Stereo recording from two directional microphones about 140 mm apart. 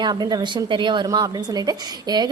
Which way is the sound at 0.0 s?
30° right (ahead or behind).